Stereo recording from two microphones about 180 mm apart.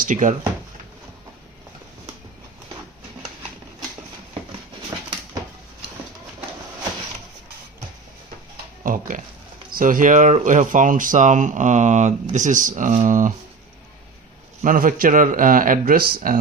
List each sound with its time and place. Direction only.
0.0 s speech: 45° right (ahead or behind)
4.9 s a sound: 20° right (ahead or behind)
8.8 s pig: 50° right (ahead or behind)
9.7 s speech: 50° right (ahead or behind)
14.6 s speech: 50° right (ahead or behind)